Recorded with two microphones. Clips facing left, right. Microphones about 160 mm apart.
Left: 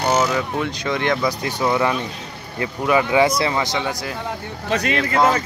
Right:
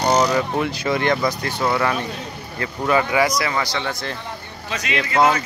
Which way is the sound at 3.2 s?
25° left (ahead or behind).